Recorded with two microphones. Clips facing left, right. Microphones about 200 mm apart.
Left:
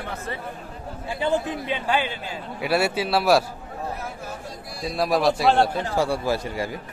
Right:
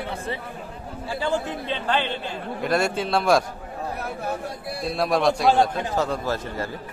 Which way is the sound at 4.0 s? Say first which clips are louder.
Right 5 dB; 60° right (ahead or behind).